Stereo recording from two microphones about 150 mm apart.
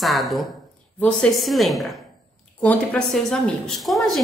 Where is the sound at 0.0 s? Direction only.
Centre (ahead or behind).